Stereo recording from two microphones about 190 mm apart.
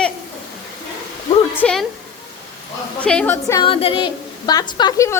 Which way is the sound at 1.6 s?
Centre (ahead or behind).